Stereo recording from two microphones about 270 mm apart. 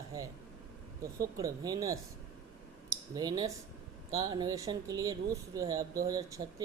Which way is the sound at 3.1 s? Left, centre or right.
Centre.